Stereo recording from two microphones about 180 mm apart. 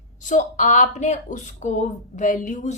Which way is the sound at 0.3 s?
45° left (ahead or behind).